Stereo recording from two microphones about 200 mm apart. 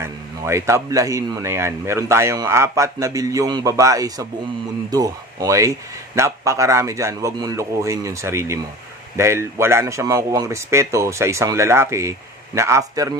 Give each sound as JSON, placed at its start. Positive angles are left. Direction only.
{"t": 0.0, "sound": "speech", "side_deg": -15}